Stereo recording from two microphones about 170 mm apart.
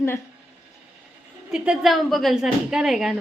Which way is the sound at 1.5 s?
5° right (ahead or behind).